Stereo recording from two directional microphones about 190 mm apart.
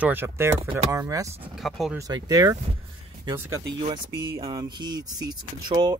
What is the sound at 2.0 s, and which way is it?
Speech, 20° right (ahead or behind).